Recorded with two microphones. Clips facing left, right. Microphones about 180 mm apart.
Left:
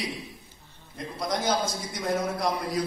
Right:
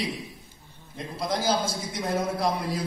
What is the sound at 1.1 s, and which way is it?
A man's voice, 30° right (ahead or behind).